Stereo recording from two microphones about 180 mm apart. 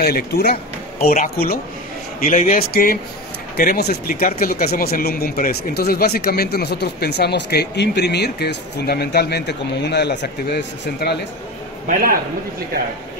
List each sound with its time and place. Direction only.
0.0 s speech: 60° left (ahead or behind)
1.1 s speech: 45° left (ahead or behind); by 11.1 s 65° left (ahead or behind)
11.9 s a man's voice: 50° right (ahead or behind)